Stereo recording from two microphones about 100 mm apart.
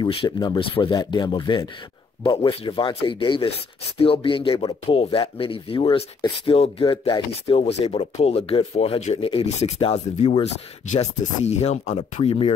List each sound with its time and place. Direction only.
0.2 s speech: 40° left (ahead or behind)
0.6 s speech: 60° left (ahead or behind)
2.3 s speech: 60° left (ahead or behind); by 12.5 s 85° left